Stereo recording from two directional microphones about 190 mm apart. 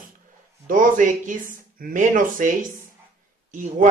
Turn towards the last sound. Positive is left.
turn(degrees=-40)  # may be behind; listen again after turning